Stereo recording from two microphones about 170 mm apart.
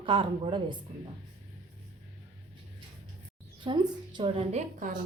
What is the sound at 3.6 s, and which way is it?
A woman's voice, 25° right (ahead or behind).